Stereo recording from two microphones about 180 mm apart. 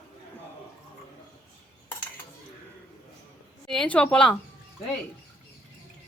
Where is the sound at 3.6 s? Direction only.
5° left (ahead or behind).